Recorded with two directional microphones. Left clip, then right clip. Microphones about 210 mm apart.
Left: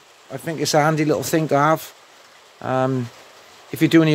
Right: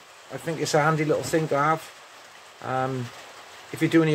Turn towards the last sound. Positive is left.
turn(degrees=55)  # may be behind; listen again after turning